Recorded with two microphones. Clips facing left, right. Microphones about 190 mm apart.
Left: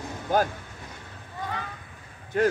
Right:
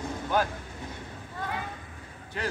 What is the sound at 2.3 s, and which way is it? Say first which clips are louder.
Speech: left 11 dB; 50° left (ahead or behind).